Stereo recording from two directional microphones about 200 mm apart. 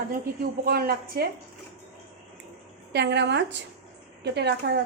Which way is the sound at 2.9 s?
60° right (ahead or behind).